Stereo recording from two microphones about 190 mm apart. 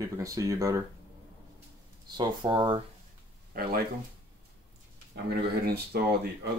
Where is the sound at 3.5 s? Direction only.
50° right (ahead or behind).